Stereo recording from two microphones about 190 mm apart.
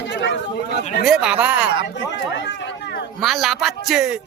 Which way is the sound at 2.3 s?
65° left (ahead or behind).